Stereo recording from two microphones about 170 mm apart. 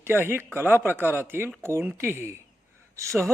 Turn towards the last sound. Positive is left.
turn(degrees=-15)  # may be behind; listen again after turning